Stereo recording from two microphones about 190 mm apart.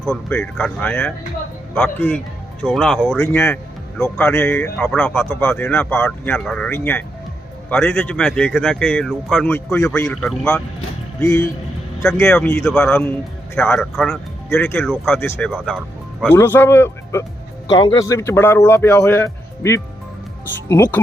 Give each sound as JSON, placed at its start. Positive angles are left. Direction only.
{"t": 0.1, "sound": "a man's voice", "side_deg": 5}
{"t": 3.2, "sound": "a man's voice", "side_deg": 15}
{"t": 5.1, "sound": "a man's voice", "side_deg": 15}
{"t": 11.2, "sound": "a man's voice", "side_deg": 15}
{"t": 12.2, "sound": "a man's voice", "side_deg": 5}
{"t": 16.3, "sound": "a man's voice", "side_deg": 10}